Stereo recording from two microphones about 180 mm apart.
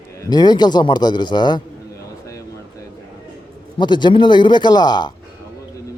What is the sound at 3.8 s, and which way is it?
Speech, 25° left (ahead or behind).